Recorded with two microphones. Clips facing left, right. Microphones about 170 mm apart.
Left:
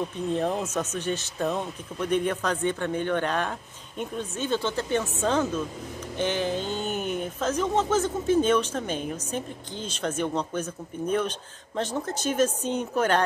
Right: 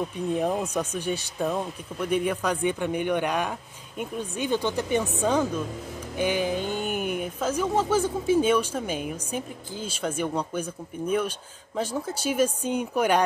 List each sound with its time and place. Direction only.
0.3 s speech: 10° right (ahead or behind)